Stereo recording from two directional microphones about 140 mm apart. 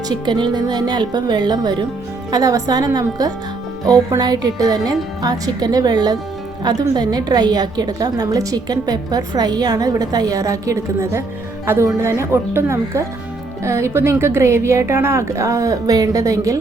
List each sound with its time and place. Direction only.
0.1 s a woman's voice: 35° right (ahead or behind)